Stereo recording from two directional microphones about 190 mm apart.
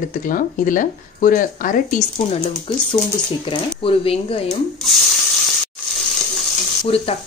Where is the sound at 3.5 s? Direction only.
30° left (ahead or behind).